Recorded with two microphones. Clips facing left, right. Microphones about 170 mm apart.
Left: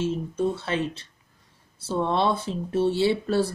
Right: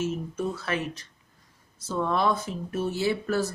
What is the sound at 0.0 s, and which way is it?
Speech, 30° left (ahead or behind).